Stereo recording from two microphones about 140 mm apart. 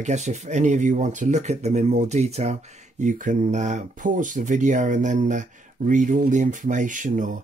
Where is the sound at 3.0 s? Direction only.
65° right (ahead or behind).